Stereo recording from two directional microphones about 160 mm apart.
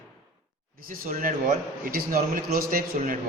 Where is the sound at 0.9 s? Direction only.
60° right (ahead or behind).